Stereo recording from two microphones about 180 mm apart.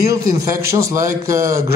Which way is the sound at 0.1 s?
15° right (ahead or behind).